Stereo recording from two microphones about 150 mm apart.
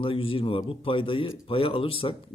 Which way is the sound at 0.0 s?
35° left (ahead or behind).